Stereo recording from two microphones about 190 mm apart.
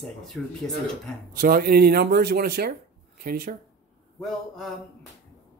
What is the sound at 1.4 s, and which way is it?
Speech, 50° right (ahead or behind).